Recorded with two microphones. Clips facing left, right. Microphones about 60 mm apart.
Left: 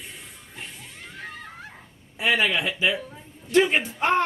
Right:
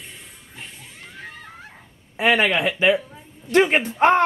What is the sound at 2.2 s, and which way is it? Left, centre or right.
Speech, right.